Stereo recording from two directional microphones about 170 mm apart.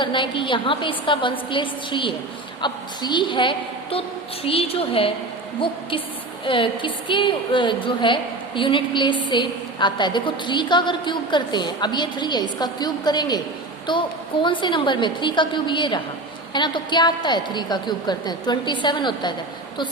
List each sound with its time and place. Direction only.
0.0 s a woman's voice: 30° left (ahead or behind)
6.4 s a woman's voice: 30° left (ahead or behind)